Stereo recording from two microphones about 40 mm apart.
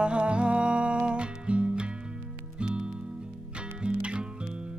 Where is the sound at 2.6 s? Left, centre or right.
Centre.